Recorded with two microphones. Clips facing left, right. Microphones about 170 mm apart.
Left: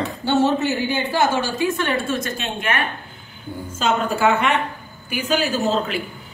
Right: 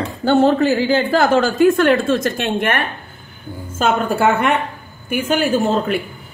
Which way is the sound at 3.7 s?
50° right (ahead or behind).